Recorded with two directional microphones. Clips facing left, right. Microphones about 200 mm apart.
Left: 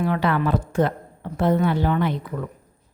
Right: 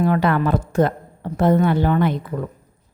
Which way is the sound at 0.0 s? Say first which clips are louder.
Right 3 dB; 45° right (ahead or behind).